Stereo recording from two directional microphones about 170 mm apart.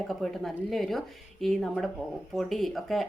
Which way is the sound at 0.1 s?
Centre (ahead or behind).